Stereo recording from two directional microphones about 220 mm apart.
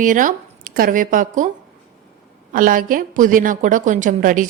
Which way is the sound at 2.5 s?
40° right (ahead or behind).